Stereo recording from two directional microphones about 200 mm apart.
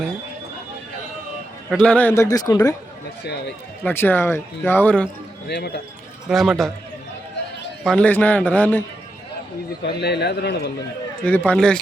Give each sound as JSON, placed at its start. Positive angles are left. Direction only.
{"t": 1.7, "sound": "speech", "side_deg": 5}
{"t": 3.8, "sound": "speech", "side_deg": 10}
{"t": 5.5, "sound": "a man's voice", "side_deg": 55}
{"t": 6.2, "sound": "speech", "side_deg": 0}
{"t": 7.9, "sound": "speech", "side_deg": 5}
{"t": 9.8, "sound": "a man's voice", "side_deg": 55}
{"t": 11.3, "sound": "speech", "side_deg": 5}